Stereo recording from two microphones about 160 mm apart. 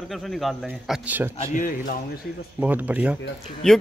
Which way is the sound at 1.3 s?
50° left (ahead or behind).